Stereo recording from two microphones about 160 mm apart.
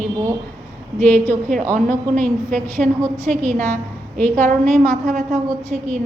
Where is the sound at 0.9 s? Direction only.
10° left (ahead or behind).